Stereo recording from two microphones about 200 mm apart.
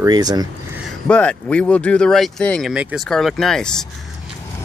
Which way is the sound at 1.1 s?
5° left (ahead or behind).